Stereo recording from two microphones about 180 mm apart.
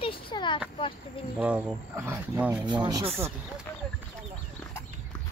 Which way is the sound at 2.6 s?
25° right (ahead or behind).